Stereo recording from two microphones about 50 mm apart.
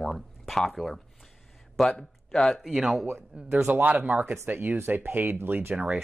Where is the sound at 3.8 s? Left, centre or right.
Right.